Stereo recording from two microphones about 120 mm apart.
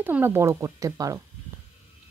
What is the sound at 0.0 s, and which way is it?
Speech, 20° right (ahead or behind).